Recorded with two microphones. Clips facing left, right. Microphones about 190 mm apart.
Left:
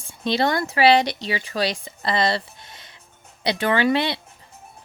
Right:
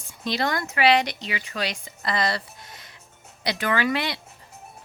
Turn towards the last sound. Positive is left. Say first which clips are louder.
# left 4 dB
turn(degrees=25)  # may be behind; listen again after turning